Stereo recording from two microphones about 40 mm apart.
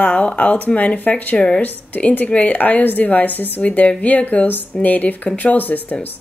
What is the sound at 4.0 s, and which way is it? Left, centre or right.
Speech, left.